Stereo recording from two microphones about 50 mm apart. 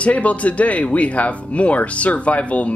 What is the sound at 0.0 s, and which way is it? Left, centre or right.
Speech, left.